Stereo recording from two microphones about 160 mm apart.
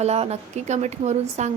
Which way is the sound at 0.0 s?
40° right (ahead or behind).